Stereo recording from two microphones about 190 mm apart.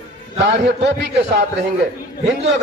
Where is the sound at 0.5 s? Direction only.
65° right (ahead or behind).